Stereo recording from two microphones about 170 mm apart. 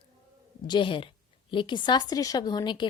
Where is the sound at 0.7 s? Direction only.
30° left (ahead or behind).